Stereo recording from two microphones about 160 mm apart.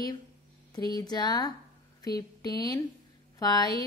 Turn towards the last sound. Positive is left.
turn(degrees=25)  # may be behind; listen again after turning